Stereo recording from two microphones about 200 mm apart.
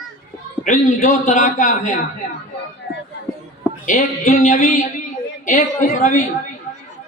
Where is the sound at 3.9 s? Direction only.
40° left (ahead or behind).